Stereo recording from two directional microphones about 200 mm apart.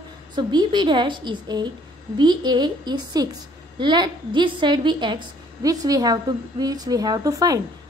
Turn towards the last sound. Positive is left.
turn(degrees=-15)  # may be behind; listen again after turning